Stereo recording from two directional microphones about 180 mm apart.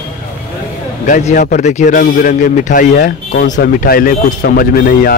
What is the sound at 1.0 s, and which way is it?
A man's voice, 45° left (ahead or behind).